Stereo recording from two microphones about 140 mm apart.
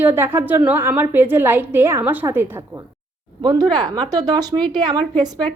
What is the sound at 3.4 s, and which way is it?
A woman's voice, 30° right (ahead or behind).